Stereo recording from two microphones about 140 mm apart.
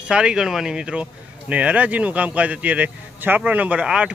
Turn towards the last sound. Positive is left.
turn(degrees=-10)  # may be behind; listen again after turning